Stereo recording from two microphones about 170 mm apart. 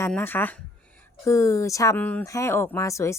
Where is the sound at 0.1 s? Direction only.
10° left (ahead or behind).